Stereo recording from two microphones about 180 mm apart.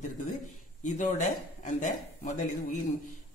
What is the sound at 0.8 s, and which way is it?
A man's voice, 45° left (ahead or behind).